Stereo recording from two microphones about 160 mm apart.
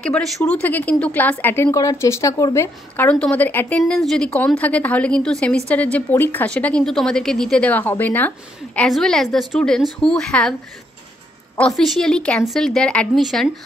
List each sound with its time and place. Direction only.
0.0 s a woman's voice: 5° left (ahead or behind)
11.5 s a woman's voice: 5° left (ahead or behind)